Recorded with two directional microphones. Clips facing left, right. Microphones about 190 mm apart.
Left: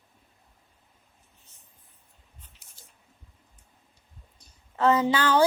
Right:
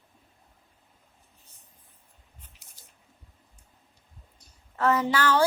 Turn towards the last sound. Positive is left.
turn(degrees=15)  # may be behind; listen again after turning